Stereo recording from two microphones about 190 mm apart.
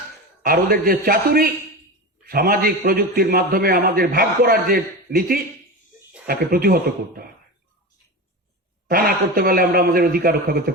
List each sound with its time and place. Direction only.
0.4 s a man's voice: 50° right (ahead or behind)
8.9 s a man's voice: 50° right (ahead or behind)